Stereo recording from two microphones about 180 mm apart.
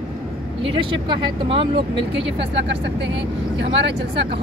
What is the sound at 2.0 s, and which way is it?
Speech, 80° right.